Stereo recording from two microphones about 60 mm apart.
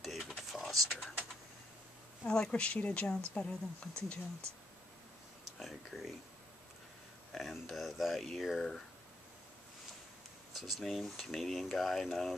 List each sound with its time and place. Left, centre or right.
0.0 s a sound: centre
2.2 s speech: centre
5.6 s speech: centre
7.3 s speech: centre
10.5 s speech: centre